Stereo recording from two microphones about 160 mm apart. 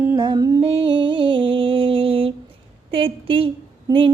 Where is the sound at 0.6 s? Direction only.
40° right (ahead or behind).